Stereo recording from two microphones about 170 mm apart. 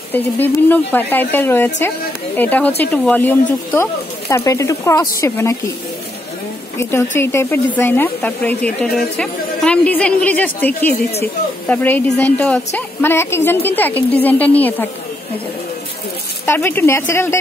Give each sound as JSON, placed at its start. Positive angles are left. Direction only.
{"t": 0.1, "sound": "speech", "side_deg": 10}
{"t": 6.8, "sound": "speech", "side_deg": 15}
{"t": 11.7, "sound": "speech", "side_deg": 10}
{"t": 16.4, "sound": "speech", "side_deg": 10}